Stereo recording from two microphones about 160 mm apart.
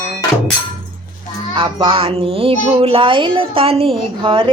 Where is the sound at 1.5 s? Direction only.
30° right (ahead or behind).